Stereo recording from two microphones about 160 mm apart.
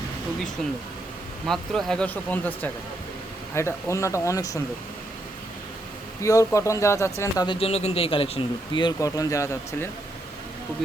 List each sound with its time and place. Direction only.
1.5 s speech: 5° left (ahead or behind); by 4.6 s 20° left (ahead or behind)
6.2 s speech: 20° left (ahead or behind)
7.4 s speech: 35° left (ahead or behind); by 9.9 s 15° left (ahead or behind)